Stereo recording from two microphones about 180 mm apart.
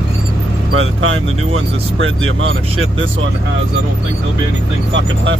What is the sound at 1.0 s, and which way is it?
Speech, 90° right.